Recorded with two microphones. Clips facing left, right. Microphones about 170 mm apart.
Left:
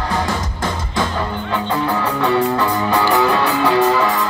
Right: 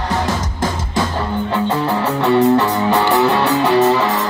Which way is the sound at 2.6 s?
20° right (ahead or behind).